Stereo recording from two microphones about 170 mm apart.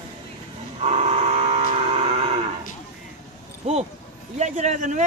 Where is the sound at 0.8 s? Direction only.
40° right (ahead or behind).